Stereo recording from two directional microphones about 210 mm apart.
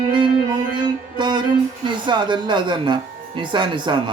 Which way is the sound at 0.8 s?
20° right (ahead or behind).